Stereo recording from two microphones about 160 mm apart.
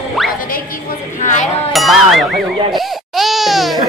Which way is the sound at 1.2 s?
50° left (ahead or behind).